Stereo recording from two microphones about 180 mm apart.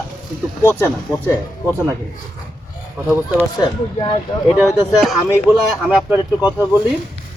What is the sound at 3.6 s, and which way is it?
Speech, 25° left (ahead or behind).